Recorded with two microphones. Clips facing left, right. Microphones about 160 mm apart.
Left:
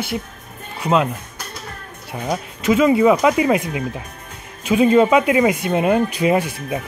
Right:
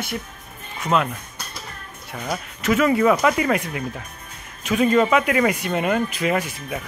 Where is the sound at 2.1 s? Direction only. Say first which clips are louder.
Left 5 dB; 15° left (ahead or behind).